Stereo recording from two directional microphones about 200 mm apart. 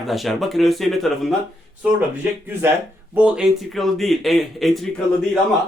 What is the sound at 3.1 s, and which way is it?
Speech, 5° right (ahead or behind).